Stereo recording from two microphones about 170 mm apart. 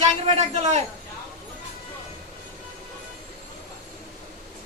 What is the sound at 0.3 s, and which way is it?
Speech, 40° right (ahead or behind).